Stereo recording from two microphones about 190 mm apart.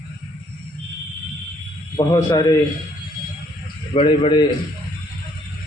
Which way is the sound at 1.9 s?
20° left (ahead or behind).